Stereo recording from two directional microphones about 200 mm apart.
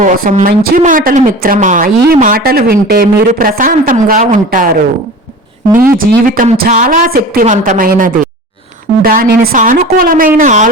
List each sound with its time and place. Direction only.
0.0 s a woman's voice: 40° right (ahead or behind)
5.7 s speech: 10° right (ahead or behind)
6.0 s a woman's voice: 45° right (ahead or behind)